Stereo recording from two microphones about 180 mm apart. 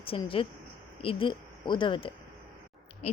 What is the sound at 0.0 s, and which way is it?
A woman's voice, 30° left (ahead or behind).